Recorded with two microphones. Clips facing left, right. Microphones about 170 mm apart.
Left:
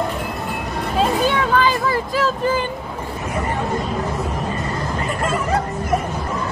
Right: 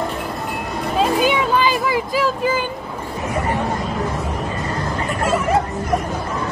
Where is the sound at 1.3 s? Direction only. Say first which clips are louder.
Even; 15° right (ahead or behind).